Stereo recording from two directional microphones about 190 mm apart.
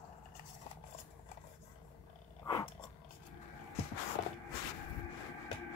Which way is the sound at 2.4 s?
20° left (ahead or behind).